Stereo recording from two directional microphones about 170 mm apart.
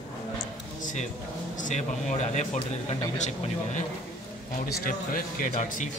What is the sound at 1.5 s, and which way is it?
A man's voice, 45° left (ahead or behind).